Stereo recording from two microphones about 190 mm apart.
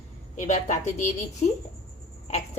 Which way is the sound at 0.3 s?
40° left (ahead or behind).